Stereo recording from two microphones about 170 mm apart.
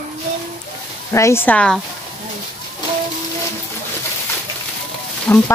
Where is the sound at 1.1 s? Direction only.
15° left (ahead or behind).